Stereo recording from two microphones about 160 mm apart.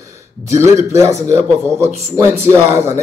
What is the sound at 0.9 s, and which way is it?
A man's voice, 20° right (ahead or behind).